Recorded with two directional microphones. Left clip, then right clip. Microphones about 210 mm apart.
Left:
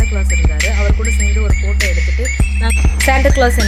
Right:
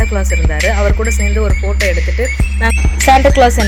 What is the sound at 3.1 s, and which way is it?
Speech, 10° right (ahead or behind).